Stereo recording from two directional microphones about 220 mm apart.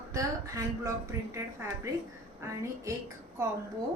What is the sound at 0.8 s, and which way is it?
Speech, 15° right (ahead or behind).